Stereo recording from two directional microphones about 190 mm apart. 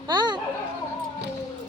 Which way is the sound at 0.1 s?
25° right (ahead or behind).